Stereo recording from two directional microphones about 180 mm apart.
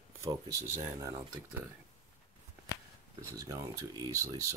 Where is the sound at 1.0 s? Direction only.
15° right (ahead or behind).